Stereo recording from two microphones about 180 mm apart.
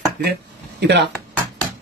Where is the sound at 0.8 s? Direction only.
70° right (ahead or behind).